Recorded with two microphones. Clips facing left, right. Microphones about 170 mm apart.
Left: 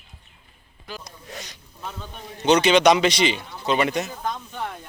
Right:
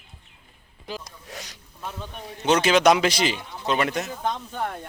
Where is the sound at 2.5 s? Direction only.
5° right (ahead or behind).